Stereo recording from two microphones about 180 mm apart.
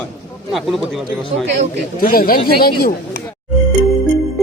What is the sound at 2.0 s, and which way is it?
Speech, 55° left (ahead or behind).